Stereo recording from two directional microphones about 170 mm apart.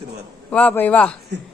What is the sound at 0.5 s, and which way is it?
Speech, 10° left (ahead or behind).